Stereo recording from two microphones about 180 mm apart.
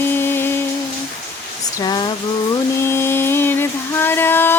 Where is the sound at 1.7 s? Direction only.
25° left (ahead or behind).